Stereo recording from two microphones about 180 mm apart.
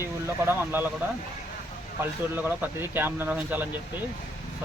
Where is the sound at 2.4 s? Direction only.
10° right (ahead or behind).